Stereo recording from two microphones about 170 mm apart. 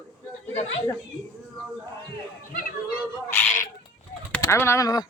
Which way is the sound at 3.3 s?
15° left (ahead or behind).